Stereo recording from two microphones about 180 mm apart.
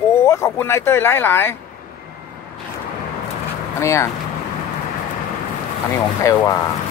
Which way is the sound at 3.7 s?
15° left (ahead or behind).